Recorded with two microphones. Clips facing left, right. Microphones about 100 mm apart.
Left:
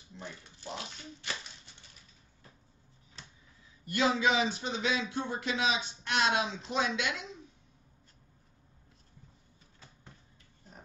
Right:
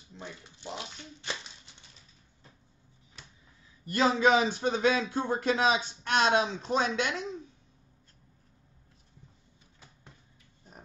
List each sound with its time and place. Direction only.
0.2 s speech: 20° right (ahead or behind)
3.9 s speech: 40° right (ahead or behind)